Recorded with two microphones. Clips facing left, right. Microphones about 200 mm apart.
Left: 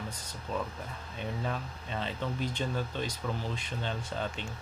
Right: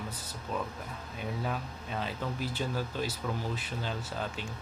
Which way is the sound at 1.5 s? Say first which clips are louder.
Even; 5° right (ahead or behind).